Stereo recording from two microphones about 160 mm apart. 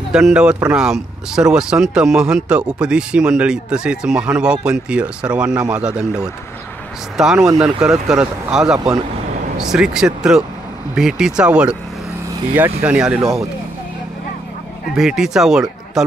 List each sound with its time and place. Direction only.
0.1 s speech: 5° right (ahead or behind)
7.3 s speech: 20° right (ahead or behind)
7.6 s speech: 5° right (ahead or behind)
15.0 s speech: 5° right (ahead or behind)